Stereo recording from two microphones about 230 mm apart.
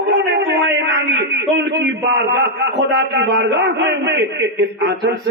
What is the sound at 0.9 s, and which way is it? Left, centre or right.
A man's voice, right.